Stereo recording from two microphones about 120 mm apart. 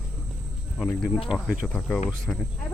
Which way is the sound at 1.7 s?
10° left (ahead or behind).